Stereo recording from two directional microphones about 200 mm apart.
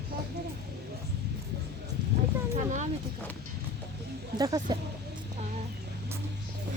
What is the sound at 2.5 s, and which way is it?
Speech, 35° right (ahead or behind).